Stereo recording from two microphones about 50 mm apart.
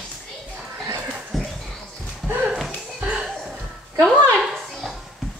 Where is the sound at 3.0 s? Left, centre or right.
Right.